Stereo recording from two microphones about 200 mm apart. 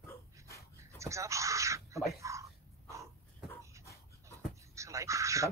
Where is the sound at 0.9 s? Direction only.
15° right (ahead or behind).